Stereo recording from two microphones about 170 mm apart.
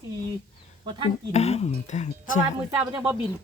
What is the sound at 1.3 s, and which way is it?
Speech, 40° left (ahead or behind).